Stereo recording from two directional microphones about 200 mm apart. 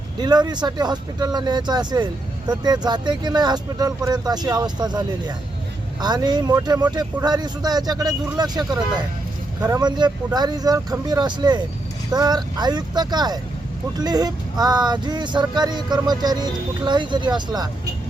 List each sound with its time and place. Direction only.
0.2 s speech: 20° right (ahead or behind)